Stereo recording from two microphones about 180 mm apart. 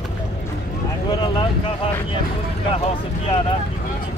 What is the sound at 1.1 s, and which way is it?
Vehicle, 25° left (ahead or behind).